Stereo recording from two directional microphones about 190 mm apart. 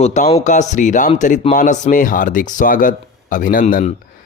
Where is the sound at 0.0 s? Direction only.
35° left (ahead or behind).